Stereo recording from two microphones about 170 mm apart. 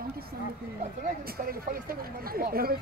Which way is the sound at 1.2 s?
60° right (ahead or behind).